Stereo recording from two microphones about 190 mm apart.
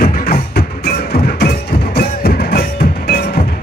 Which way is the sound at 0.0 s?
55° left (ahead or behind).